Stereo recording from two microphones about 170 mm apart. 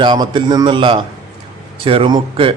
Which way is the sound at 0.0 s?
30° right (ahead or behind).